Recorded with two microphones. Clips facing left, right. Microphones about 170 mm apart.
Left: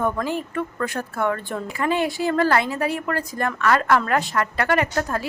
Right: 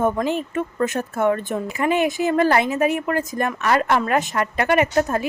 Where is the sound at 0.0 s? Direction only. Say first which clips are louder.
Right 3 dB; 20° right (ahead or behind).